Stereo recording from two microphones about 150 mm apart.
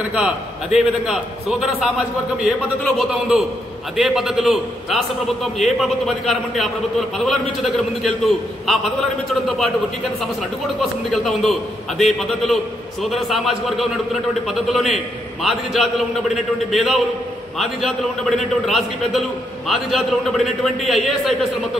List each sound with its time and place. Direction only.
0.1 s a man's voice: 5° right (ahead or behind)
10.8 s a man's voice: centre (ahead or behind)